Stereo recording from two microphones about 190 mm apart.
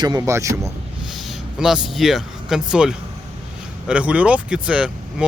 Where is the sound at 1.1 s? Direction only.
Centre (ahead or behind).